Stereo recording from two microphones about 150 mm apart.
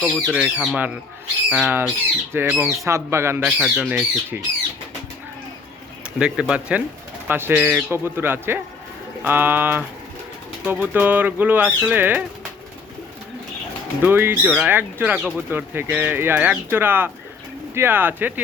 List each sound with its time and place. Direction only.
0.0 s speech: centre (ahead or behind); by 3.4 s 15° right (ahead or behind)
3.4 s speech: 5° right (ahead or behind)
6.1 s speech: 5° right (ahead or behind)
14.0 s speech: 15° right (ahead or behind)